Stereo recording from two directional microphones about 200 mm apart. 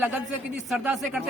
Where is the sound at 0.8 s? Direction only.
5° right (ahead or behind).